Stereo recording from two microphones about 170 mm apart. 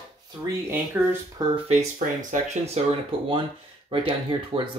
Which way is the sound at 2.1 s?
40° right (ahead or behind).